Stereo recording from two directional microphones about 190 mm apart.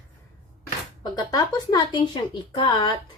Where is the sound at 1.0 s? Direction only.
20° left (ahead or behind).